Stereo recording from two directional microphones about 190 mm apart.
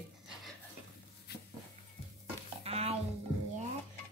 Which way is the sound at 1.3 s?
55° left (ahead or behind).